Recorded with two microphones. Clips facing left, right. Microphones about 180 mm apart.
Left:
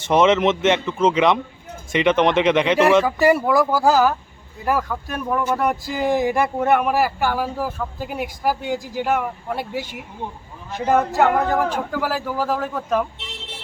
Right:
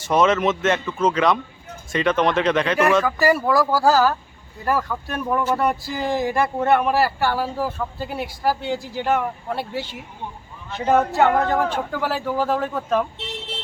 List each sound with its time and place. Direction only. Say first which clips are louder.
0.0 s speech: left 2 dB; 20° left (ahead or behind); by 5.7 s centre (ahead or behind)
5.9 s speech: left 3 dB; 15° left (ahead or behind)